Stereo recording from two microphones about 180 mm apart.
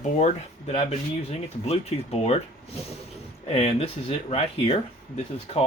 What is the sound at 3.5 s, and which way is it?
Speech, 35° left (ahead or behind).